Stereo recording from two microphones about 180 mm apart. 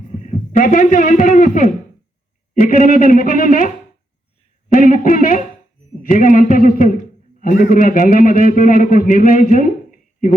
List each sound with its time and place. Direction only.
0.2 s a man's voice: 45° left (ahead or behind)
4.7 s a man's voice: 50° left (ahead or behind)